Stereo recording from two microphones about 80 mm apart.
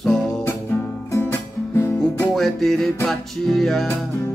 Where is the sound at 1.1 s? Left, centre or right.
Left.